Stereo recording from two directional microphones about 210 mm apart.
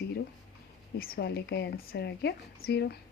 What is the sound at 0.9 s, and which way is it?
Speech, 45° left (ahead or behind).